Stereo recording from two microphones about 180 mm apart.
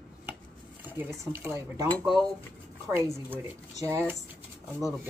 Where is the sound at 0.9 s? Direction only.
10° right (ahead or behind).